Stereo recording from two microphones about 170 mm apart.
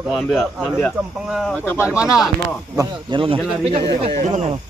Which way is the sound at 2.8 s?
25° right (ahead or behind).